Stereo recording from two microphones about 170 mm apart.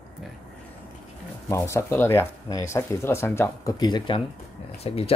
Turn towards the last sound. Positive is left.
turn(degrees=35)  # may be behind; listen again after turning